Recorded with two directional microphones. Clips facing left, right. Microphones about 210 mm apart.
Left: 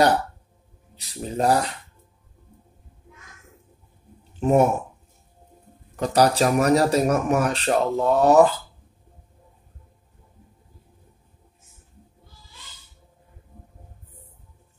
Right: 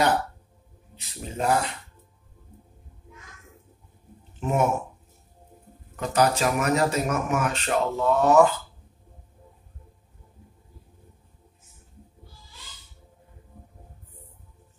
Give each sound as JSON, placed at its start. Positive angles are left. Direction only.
{"t": 0.9, "sound": "speech", "side_deg": 35}
{"t": 4.4, "sound": "speech", "side_deg": 35}
{"t": 5.9, "sound": "speech", "side_deg": 35}